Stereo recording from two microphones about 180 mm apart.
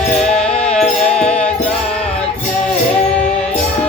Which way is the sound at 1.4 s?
5° left (ahead or behind).